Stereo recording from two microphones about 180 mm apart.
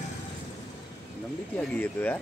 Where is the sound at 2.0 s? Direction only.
10° left (ahead or behind).